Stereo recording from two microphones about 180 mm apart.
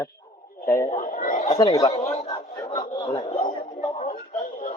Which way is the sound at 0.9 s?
45° left (ahead or behind).